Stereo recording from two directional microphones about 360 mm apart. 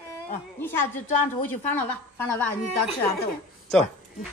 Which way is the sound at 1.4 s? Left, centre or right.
Centre.